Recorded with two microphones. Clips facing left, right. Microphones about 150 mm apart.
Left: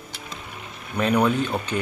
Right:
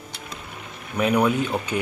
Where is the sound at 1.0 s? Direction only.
10° right (ahead or behind).